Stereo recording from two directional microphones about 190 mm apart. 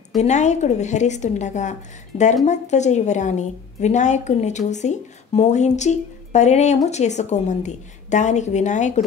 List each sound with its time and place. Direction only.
0.2 s a woman's voice: 40° left (ahead or behind)